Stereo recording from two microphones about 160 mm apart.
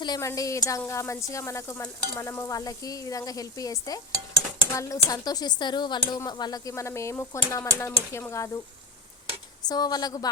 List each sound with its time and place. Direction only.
0.0 s speech: 20° left (ahead or behind)
9.6 s speech: 25° left (ahead or behind)